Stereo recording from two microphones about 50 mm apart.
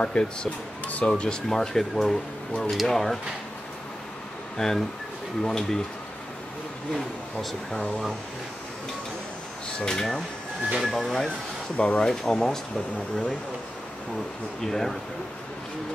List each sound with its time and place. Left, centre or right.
0.0 s speech: centre
2.0 s speech: left
2.7 s speech: centre
4.6 s speech: centre
9.8 s speech: centre
11.7 s speech: left
12.0 s speech: centre
12.3 s speech: centre
14.6 s speech: centre